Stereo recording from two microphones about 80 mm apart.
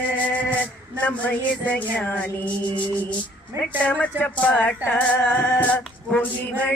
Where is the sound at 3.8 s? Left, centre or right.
Centre.